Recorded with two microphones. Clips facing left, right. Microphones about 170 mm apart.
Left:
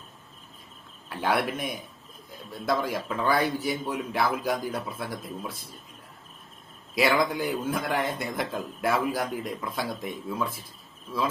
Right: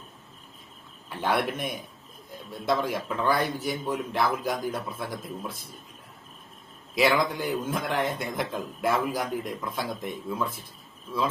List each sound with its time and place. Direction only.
1.4 s a man's voice: centre (ahead or behind)
6.9 s a man's voice: centre (ahead or behind)